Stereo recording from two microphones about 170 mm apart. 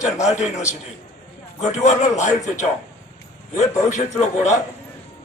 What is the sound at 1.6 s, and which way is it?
A man's voice, 45° left (ahead or behind).